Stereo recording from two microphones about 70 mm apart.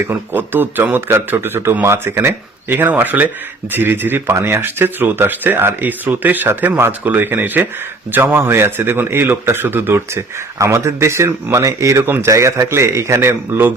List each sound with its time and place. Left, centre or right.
0.1 s speech: right
10.6 s speech: right
12.0 s speech: right
12.3 s speech: right